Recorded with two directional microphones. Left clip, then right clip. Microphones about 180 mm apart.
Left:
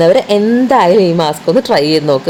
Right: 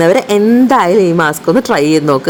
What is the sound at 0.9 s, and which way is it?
Speech, 45° right (ahead or behind).